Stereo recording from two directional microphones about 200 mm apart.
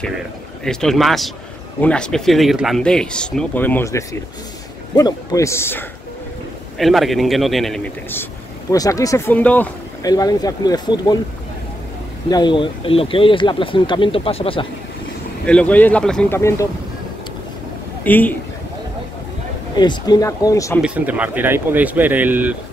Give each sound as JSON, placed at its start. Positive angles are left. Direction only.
{"t": 0.7, "sound": "speech", "side_deg": 0}
{"t": 6.8, "sound": "speech", "side_deg": 0}
{"t": 10.0, "sound": "speech", "side_deg": 20}
{"t": 12.3, "sound": "speech", "side_deg": 20}
{"t": 15.4, "sound": "speech", "side_deg": 5}
{"t": 18.0, "sound": "speech", "side_deg": 10}
{"t": 19.7, "sound": "speech", "side_deg": 20}
{"t": 20.8, "sound": "speech", "side_deg": -5}